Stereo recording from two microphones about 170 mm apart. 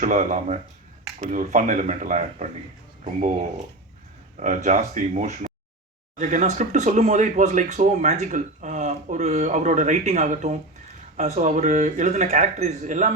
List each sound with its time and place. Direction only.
0.0 s speech: 45° right (ahead or behind)
4.4 s speech: 45° right (ahead or behind)